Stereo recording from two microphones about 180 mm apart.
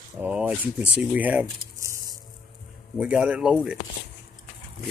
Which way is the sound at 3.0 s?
5° right (ahead or behind).